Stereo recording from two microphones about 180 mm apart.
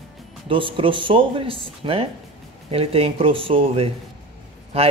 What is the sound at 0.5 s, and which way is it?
Speech, 30° right (ahead or behind).